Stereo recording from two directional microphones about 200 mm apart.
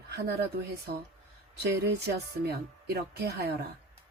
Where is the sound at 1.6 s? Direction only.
55° right (ahead or behind).